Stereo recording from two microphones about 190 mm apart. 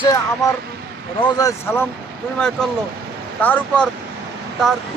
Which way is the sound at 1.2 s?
25° left (ahead or behind).